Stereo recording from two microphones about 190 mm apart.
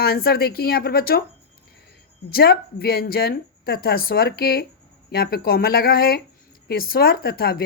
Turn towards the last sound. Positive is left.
turn(degrees=50)  # may be behind; listen again after turning